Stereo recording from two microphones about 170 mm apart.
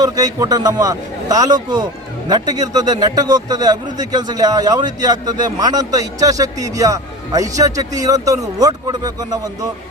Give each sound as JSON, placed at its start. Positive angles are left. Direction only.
{"t": 0.0, "sound": "speech", "side_deg": -20}